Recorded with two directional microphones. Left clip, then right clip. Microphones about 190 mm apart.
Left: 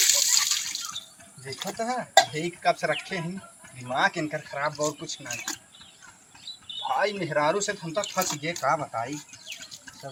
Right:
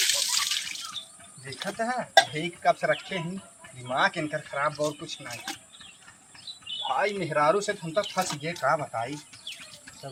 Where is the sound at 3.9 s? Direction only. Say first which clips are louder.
Even; centre (ahead or behind).